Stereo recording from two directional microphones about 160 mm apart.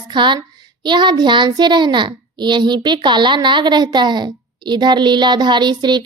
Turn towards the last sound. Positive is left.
turn(degrees=-30)  # may be behind; listen again after turning